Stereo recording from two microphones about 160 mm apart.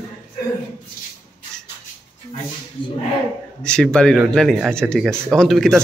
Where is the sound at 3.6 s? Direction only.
5° left (ahead or behind).